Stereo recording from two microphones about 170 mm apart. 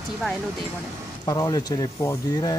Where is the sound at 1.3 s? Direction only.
20° left (ahead or behind).